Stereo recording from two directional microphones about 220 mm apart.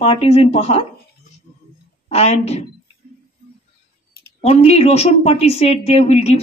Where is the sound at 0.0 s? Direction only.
25° left (ahead or behind).